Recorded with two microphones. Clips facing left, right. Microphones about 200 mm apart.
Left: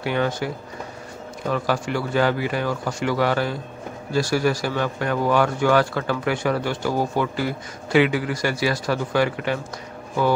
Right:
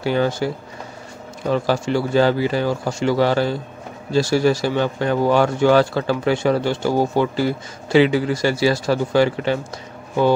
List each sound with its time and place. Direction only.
0.0 s speech: 30° right (ahead or behind)
1.5 s a man's voice: 30° right (ahead or behind)